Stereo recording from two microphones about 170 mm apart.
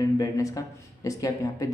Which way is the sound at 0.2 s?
20° left (ahead or behind).